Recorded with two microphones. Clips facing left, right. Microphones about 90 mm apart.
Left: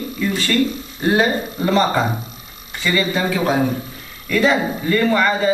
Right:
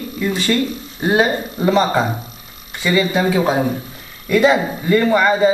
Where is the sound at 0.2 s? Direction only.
20° right (ahead or behind).